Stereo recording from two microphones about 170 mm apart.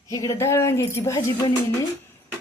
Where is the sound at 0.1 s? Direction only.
20° left (ahead or behind).